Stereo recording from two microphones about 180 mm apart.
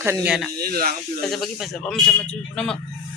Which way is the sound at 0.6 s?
60° right (ahead or behind).